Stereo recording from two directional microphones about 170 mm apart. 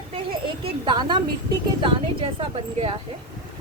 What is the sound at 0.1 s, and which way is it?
A woman's voice, 35° right (ahead or behind).